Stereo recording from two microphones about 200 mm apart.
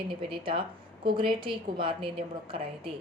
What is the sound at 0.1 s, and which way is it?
A woman's voice, 25° right (ahead or behind).